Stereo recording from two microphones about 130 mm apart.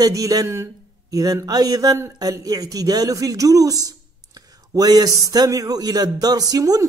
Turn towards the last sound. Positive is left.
turn(degrees=-30)  # may be behind; listen again after turning